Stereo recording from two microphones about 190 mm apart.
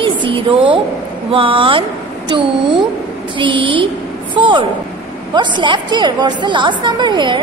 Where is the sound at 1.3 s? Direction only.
25° right (ahead or behind).